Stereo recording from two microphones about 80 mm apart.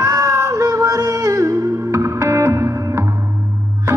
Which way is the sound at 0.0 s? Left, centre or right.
Right.